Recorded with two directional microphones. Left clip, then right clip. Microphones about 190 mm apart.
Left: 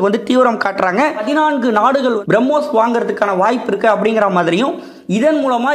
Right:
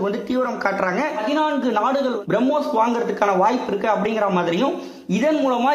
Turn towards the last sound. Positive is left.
turn(degrees=15)  # may be behind; listen again after turning